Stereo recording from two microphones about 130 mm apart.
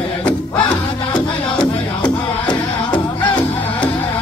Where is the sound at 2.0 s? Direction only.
35° left (ahead or behind).